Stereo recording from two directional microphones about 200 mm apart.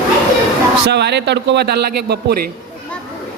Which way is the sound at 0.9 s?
55° right (ahead or behind).